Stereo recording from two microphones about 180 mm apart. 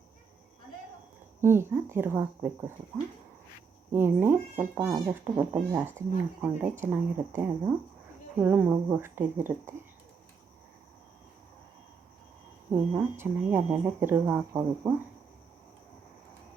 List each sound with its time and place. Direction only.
1.4 s speech: 15° right (ahead or behind)
3.9 s speech: 10° right (ahead or behind)
12.7 s speech: 10° right (ahead or behind)